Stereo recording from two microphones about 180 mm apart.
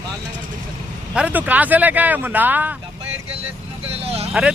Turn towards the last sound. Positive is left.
turn(degrees=-35)  # may be behind; listen again after turning